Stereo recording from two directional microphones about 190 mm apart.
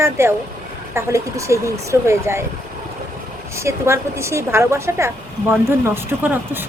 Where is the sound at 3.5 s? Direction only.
15° right (ahead or behind).